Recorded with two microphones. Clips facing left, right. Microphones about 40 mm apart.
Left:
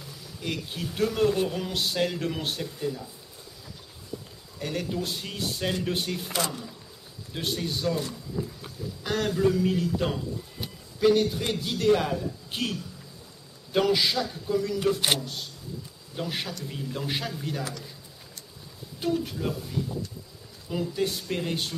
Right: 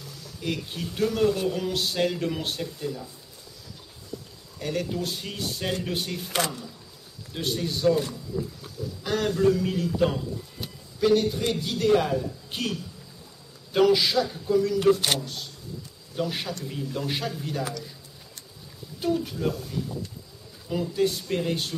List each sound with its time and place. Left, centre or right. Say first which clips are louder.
0.2 s a man's voice: right 2 dB; centre
4.6 s a man's voice: right 2 dB; centre
7.3 s a man's voice: right 2 dB; centre
8.3 s wild animals: right 2 dB; centre
9.0 s a man's voice: right 2 dB; centre
13.7 s a man's voice: right 3 dB; centre
15.0 s speech: even; centre
16.2 s a man's voice: right 3 dB; centre
18.9 s a man's voice: right 1 dB; centre
20.7 s a man's voice: right 3 dB; centre